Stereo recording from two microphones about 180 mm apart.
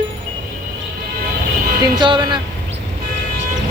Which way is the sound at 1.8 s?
25° right (ahead or behind).